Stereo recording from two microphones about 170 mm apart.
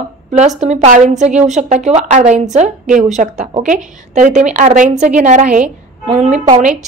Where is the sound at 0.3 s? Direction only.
45° right (ahead or behind).